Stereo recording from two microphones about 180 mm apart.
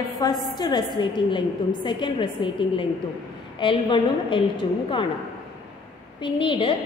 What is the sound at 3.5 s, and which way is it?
A woman's voice, 25° left (ahead or behind).